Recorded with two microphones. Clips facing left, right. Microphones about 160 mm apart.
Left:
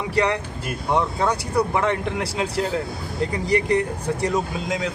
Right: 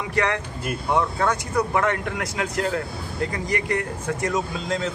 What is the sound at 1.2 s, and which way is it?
Speech, 10° left (ahead or behind).